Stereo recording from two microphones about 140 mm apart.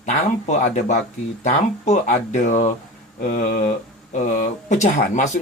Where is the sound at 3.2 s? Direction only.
75° left (ahead or behind).